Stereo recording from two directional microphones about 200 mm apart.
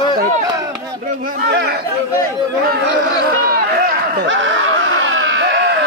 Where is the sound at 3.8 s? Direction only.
60° right (ahead or behind).